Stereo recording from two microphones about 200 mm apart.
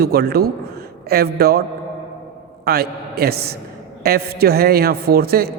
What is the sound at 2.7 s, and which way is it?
A man's voice, 50° right (ahead or behind).